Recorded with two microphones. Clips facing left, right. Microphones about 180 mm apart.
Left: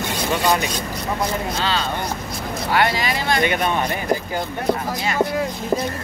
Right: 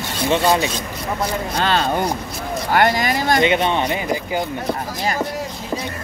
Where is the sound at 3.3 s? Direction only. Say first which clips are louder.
Right 3 dB; 25° right (ahead or behind).